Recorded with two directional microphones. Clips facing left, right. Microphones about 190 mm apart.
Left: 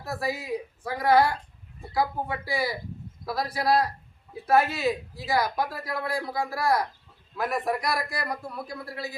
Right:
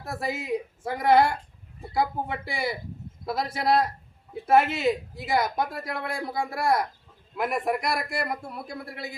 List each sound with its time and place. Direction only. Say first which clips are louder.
0.0 s a man's voice: left 1 dB; 25° right (ahead or behind)